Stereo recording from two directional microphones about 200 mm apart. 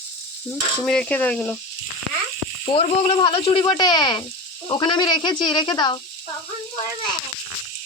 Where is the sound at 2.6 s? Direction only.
30° left (ahead or behind).